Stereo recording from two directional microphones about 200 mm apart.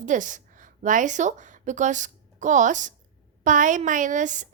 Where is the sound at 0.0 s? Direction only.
40° right (ahead or behind).